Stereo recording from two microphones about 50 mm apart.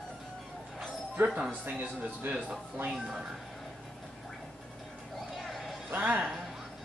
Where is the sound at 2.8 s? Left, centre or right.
Centre.